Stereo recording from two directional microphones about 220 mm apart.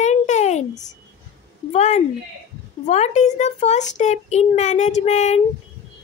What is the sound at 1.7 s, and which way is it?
A child's voice, 30° left (ahead or behind).